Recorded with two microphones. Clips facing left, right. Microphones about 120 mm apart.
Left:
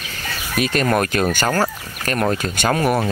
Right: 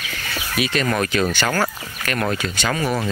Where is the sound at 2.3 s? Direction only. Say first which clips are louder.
Left 3 dB; 40° left (ahead or behind).